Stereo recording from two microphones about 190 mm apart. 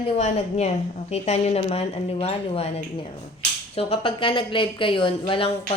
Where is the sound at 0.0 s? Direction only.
35° left (ahead or behind).